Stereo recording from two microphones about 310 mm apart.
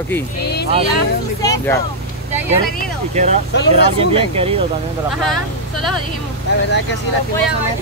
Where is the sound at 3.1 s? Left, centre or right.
Right.